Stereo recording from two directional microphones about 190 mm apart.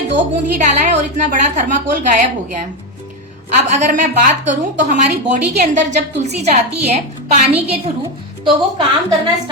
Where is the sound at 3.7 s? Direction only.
40° right (ahead or behind).